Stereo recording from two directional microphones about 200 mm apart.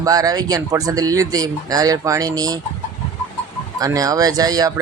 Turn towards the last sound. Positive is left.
turn(degrees=-20)  # may be behind; listen again after turning